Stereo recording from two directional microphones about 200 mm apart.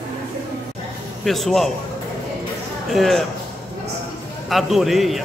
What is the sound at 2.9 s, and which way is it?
Speech, centre (ahead or behind).